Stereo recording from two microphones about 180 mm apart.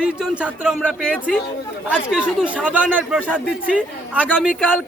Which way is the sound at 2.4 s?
5° right (ahead or behind).